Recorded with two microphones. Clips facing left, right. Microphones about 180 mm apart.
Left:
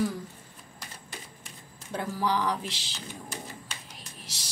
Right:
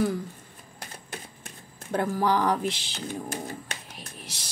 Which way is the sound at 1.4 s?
55° right (ahead or behind).